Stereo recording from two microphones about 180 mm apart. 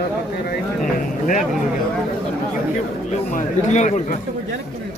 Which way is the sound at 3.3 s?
40° left (ahead or behind).